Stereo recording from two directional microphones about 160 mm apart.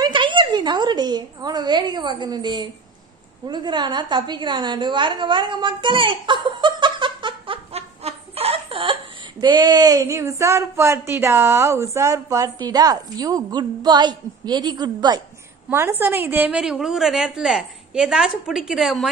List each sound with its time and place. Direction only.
0.0 s a woman's voice: 30° right (ahead or behind)
15.7 s a woman's voice: 15° right (ahead or behind)